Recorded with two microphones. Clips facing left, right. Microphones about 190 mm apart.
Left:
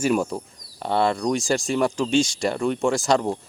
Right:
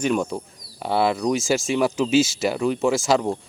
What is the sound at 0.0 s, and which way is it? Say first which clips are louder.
Speech: left 1 dB; 5° left (ahead or behind).